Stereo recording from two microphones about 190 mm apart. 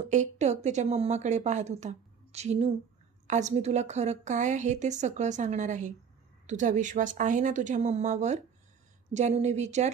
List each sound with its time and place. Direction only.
0.0 s a woman's voice: 40° right (ahead or behind)